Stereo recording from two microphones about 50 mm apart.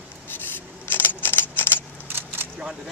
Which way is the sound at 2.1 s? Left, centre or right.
Right.